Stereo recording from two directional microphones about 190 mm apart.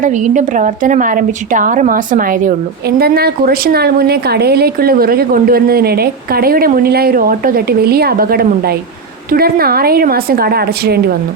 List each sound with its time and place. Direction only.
0.0 s a woman's voice: 40° right (ahead or behind)